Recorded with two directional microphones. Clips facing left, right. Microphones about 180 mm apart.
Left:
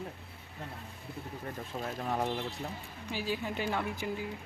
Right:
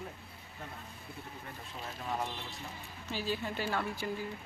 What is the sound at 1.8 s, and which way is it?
Speech, 50° left (ahead or behind).